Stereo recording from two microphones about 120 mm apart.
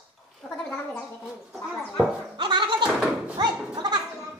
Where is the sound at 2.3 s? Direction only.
40° right (ahead or behind).